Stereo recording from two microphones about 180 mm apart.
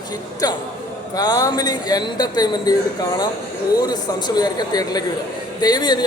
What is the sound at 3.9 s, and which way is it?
A man's voice, 20° left (ahead or behind).